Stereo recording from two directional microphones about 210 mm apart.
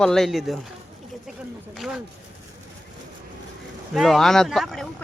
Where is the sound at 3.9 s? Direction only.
Centre (ahead or behind).